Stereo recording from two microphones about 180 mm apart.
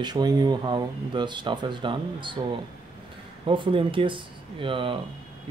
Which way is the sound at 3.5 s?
30° right (ahead or behind).